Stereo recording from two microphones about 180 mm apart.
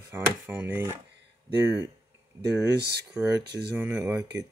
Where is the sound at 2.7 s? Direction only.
65° right (ahead or behind).